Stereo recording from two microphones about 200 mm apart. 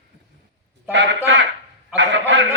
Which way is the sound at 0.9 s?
60° right (ahead or behind).